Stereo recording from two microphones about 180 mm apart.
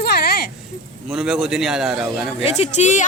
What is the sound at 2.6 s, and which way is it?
Speech, 40° left (ahead or behind).